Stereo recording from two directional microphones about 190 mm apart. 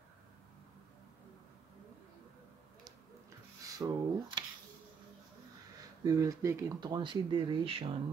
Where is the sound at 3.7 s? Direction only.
20° right (ahead or behind).